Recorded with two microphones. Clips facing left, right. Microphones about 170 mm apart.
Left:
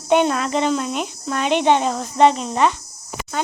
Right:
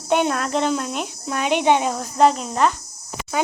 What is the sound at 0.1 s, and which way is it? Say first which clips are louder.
A child's voice: left 3 dB; 5° right (ahead or behind).